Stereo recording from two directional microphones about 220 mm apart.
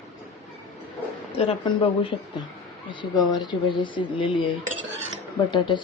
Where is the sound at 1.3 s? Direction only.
25° left (ahead or behind).